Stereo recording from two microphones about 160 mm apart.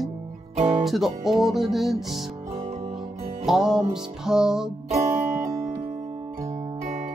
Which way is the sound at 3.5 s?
5° right (ahead or behind).